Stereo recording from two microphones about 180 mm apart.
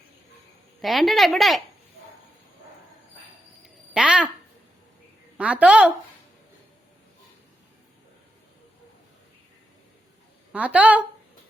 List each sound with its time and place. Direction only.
0.8 s speech: centre (ahead or behind)
3.9 s speech: 5° right (ahead or behind)
5.4 s a woman's voice: 5° right (ahead or behind)
10.5 s a woman's voice: 10° right (ahead or behind)